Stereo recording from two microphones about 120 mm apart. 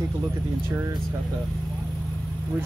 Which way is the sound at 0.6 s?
20° right (ahead or behind).